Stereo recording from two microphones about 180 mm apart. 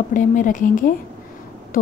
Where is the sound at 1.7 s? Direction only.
50° left (ahead or behind).